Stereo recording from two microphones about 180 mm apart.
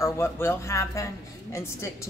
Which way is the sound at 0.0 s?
15° left (ahead or behind).